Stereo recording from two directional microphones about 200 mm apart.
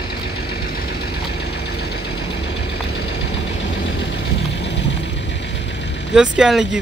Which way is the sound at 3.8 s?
65° left (ahead or behind).